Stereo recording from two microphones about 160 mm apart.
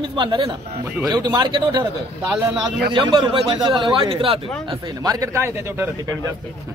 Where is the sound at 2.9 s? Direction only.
30° right (ahead or behind).